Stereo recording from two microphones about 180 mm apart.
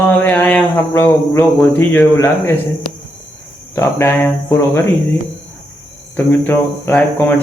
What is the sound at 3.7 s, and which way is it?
Speech, 15° left (ahead or behind).